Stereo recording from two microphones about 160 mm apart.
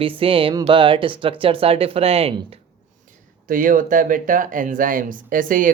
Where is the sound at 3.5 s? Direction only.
60° right (ahead or behind).